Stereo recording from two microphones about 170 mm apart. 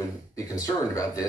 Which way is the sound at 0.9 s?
20° left (ahead or behind).